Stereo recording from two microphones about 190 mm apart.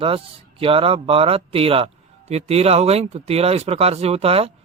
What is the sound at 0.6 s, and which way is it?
Speech, 30° right (ahead or behind).